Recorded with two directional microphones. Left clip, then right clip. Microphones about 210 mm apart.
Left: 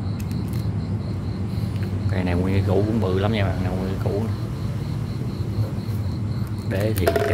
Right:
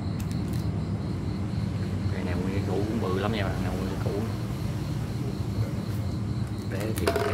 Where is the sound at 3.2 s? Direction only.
25° left (ahead or behind).